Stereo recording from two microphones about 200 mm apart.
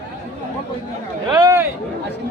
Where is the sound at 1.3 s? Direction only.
15° right (ahead or behind).